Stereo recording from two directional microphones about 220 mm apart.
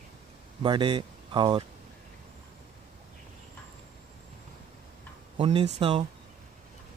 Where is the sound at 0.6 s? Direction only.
20° right (ahead or behind).